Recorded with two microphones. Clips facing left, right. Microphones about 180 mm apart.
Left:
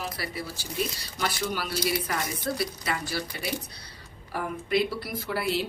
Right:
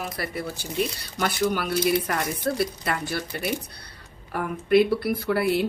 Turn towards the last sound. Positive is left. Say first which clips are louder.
# right 6 dB
turn(degrees=-55)  # may be behind; listen again after turning